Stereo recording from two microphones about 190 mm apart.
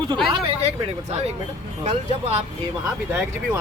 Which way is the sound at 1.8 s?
35° right (ahead or behind).